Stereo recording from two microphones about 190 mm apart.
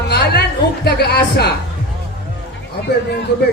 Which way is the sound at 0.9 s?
55° left (ahead or behind).